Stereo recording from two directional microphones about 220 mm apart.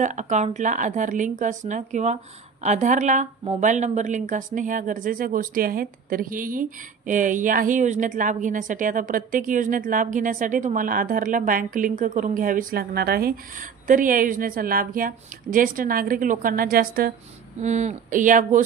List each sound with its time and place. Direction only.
0.0 s a woman's voice: 35° right (ahead or behind)